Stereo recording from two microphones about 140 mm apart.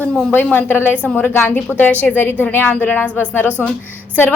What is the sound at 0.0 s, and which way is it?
A woman's voice, 10° left (ahead or behind).